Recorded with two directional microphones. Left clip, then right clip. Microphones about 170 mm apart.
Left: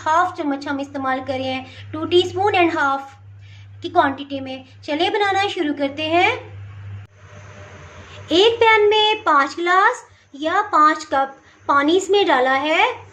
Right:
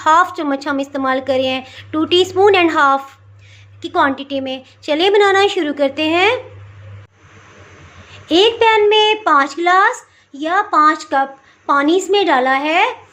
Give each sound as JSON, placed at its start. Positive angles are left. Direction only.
{"t": 0.0, "sound": "speech", "side_deg": -45}
{"t": 8.3, "sound": "a child's voice", "side_deg": -20}